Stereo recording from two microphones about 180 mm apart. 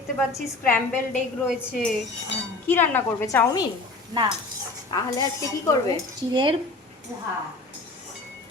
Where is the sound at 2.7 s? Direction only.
10° left (ahead or behind).